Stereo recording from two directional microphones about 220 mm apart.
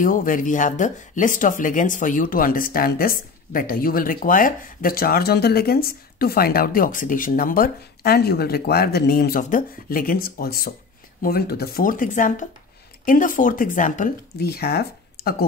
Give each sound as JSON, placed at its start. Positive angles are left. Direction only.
{"t": 0.0, "sound": "speech", "side_deg": 40}